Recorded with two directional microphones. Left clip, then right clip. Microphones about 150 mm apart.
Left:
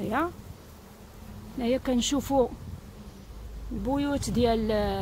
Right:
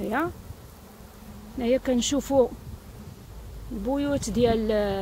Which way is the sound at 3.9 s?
5° right (ahead or behind).